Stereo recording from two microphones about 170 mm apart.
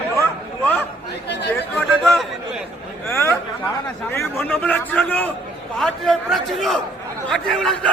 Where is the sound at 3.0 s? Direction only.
15° left (ahead or behind).